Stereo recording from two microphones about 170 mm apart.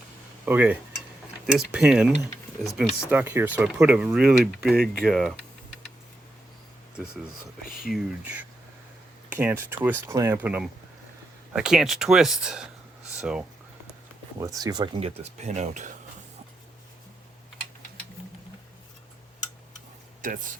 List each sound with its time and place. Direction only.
0.4 s speech: 10° right (ahead or behind)
7.8 s speech: centre (ahead or behind)
14.3 s speech: 20° right (ahead or behind)
15.0 s speech: 40° right (ahead or behind)